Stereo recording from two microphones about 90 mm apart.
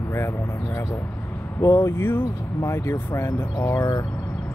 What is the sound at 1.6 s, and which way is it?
Speech, 35° left (ahead or behind).